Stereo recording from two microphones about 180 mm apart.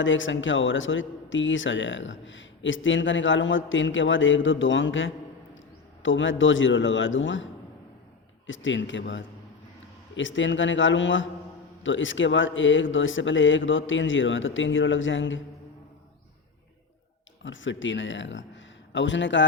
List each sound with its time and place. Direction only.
0.0 s speech: 90° left
8.4 s speech: 90° left
17.4 s speech: 90° left